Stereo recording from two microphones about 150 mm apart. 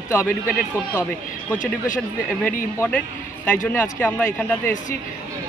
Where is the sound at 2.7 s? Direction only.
10° left (ahead or behind).